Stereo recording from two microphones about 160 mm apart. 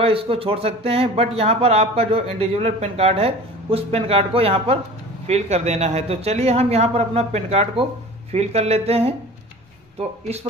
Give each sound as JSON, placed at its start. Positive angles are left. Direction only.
{"t": 0.0, "sound": "speech", "side_deg": -35}